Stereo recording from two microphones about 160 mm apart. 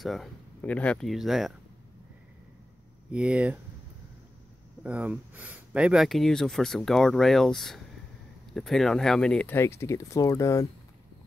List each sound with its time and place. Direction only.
0.0 s speech: centre (ahead or behind)
3.1 s speech: 5° right (ahead or behind)
4.8 s speech: 10° right (ahead or behind); by 10.7 s 20° left (ahead or behind)